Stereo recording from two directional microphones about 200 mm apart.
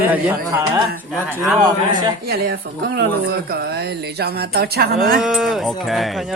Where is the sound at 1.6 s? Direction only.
20° right (ahead or behind).